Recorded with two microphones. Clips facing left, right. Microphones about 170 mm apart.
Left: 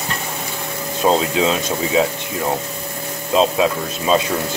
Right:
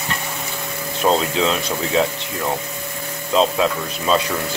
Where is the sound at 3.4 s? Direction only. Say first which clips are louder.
Left 1 dB; 15° left (ahead or behind).